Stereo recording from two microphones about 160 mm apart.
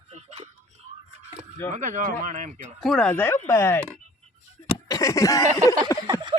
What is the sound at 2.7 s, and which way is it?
Speech, centre (ahead or behind).